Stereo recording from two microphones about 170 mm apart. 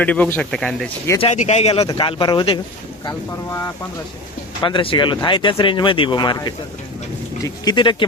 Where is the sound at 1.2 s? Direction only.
40° left (ahead or behind); by 3.7 s 20° left (ahead or behind).